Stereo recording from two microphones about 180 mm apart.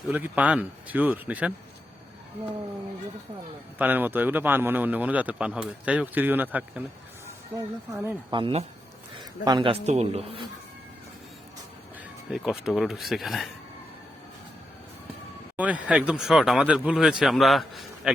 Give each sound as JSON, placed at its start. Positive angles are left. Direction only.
{"t": 0.1, "sound": "a man's voice", "side_deg": -10}
{"t": 3.8, "sound": "a man's voice", "side_deg": -10}
{"t": 8.3, "sound": "a man's voice", "side_deg": -30}
{"t": 12.3, "sound": "speech", "side_deg": -5}
{"t": 15.5, "sound": "speech", "side_deg": -10}